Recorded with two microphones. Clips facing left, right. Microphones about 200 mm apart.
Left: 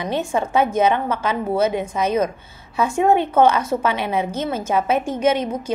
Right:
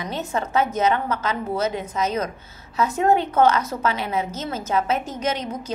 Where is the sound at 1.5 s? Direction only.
30° left (ahead or behind).